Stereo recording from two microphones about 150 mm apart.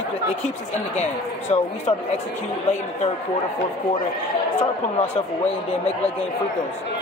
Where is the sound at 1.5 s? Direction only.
45° left (ahead or behind).